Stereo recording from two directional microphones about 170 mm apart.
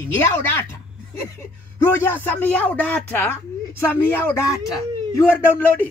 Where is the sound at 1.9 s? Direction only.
15° left (ahead or behind).